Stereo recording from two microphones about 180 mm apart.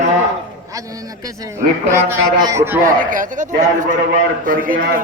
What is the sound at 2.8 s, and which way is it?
A man's voice, 45° right (ahead or behind).